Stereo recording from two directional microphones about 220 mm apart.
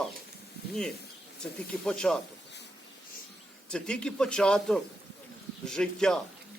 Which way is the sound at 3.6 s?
5° left (ahead or behind).